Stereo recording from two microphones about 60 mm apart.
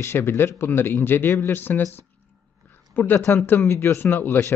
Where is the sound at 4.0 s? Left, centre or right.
Left.